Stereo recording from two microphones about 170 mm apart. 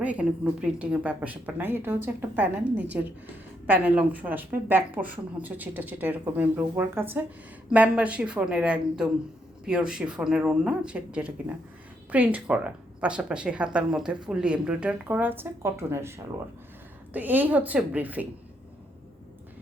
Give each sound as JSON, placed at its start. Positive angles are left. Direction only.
{"t": 0.0, "sound": "speech", "side_deg": -5}